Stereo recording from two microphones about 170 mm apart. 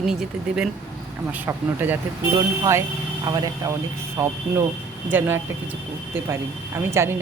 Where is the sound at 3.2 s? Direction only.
20° right (ahead or behind).